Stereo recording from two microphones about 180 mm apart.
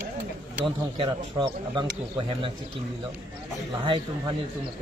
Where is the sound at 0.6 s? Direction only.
25° right (ahead or behind).